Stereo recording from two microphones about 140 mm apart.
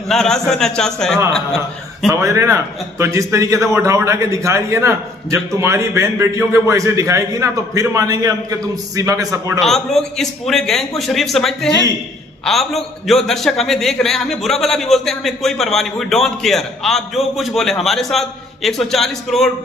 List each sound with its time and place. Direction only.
0.1 s a man's voice: 5° left (ahead or behind)
2.1 s a man's voice: 20° right (ahead or behind)
9.6 s a man's voice: centre (ahead or behind)